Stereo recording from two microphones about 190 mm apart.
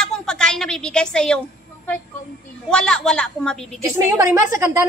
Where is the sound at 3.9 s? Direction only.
15° right (ahead or behind).